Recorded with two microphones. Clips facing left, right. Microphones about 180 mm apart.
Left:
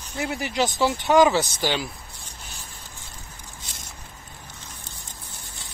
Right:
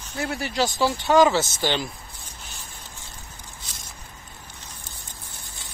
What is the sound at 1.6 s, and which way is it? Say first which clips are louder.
Speech: even; 10° left (ahead or behind).